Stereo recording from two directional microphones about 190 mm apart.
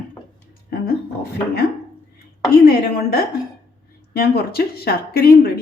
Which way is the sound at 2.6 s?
55° left (ahead or behind).